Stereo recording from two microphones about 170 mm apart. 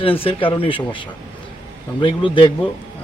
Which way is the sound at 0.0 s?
35° left (ahead or behind).